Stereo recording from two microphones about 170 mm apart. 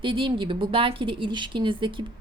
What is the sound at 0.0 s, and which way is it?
Speech, 30° right (ahead or behind).